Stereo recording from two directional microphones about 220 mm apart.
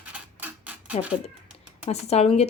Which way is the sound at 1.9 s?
30° left (ahead or behind).